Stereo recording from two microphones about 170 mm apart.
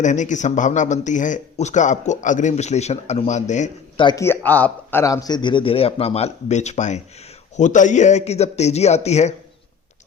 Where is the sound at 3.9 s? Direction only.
25° left (ahead or behind).